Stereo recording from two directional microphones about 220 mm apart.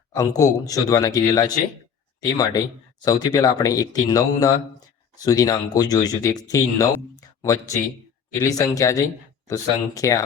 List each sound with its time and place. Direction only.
0.2 s speech: 15° left (ahead or behind)